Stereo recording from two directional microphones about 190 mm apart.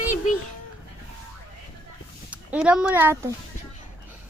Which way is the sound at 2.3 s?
5° right (ahead or behind).